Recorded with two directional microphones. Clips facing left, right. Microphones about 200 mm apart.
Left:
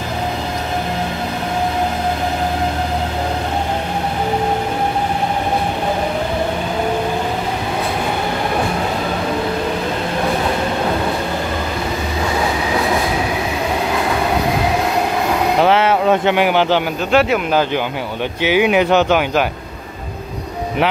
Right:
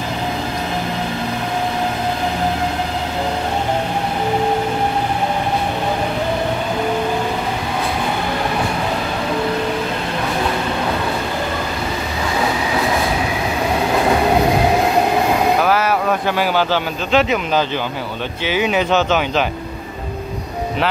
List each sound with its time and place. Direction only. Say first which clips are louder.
15.6 s speech: left 3 dB; 25° left (ahead or behind)